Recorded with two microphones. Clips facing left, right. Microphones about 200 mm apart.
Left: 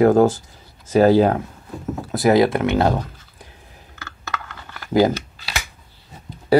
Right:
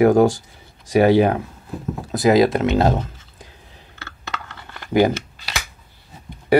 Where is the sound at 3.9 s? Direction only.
25° right (ahead or behind).